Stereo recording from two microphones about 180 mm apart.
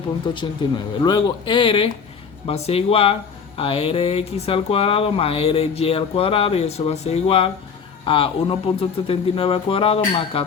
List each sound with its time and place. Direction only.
0.3 s speech: 25° left (ahead or behind)